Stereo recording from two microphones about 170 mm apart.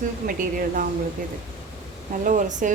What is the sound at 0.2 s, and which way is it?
Speech, 50° right (ahead or behind).